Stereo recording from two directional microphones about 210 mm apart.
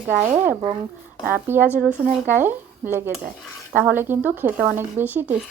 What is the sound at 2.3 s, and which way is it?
Speech, 10° right (ahead or behind).